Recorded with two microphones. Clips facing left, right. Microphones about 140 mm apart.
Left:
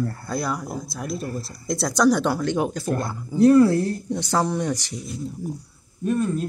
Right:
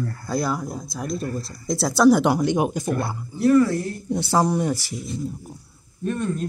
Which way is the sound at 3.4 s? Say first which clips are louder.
Left 2 dB; 35° left (ahead or behind).